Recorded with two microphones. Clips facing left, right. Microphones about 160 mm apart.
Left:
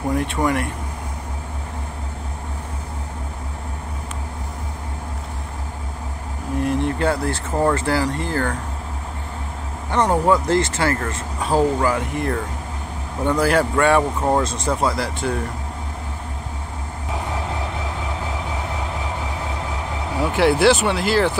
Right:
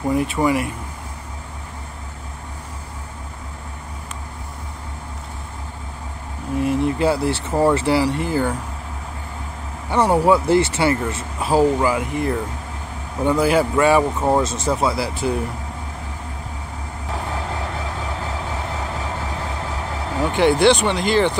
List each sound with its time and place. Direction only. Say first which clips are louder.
0.1 s speech: right 2 dB; 5° right (ahead or behind)
6.6 s speech: right 2 dB; centre (ahead or behind)
7.2 s speech: right 3 dB; 30° right (ahead or behind)
7.5 s speech: right 2 dB; 5° right (ahead or behind)
9.8 s speech: right 2 dB; 5° right (ahead or behind)
20.2 s speech: right 1 dB; 5° left (ahead or behind)